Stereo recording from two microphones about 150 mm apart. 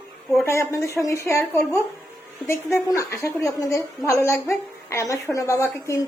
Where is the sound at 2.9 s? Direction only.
20° left (ahead or behind).